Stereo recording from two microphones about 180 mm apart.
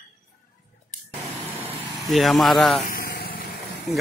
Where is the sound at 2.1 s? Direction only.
Centre (ahead or behind).